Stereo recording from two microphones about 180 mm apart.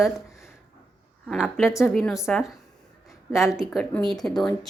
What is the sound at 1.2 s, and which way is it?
A woman's voice, centre (ahead or behind).